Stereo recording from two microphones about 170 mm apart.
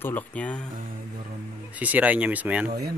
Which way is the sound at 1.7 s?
10° right (ahead or behind).